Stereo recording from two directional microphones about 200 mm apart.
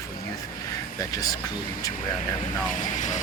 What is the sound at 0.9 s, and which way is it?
Speech, 20° left (ahead or behind).